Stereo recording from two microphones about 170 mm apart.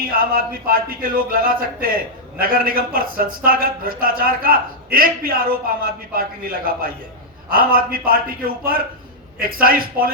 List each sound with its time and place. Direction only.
0.1 s speech: 60° right (ahead or behind)